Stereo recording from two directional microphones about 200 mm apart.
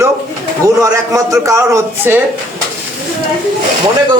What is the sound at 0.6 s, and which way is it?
A man's voice, 15° right (ahead or behind).